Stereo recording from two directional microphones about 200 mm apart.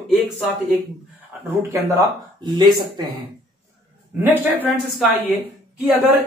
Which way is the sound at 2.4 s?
20° right (ahead or behind).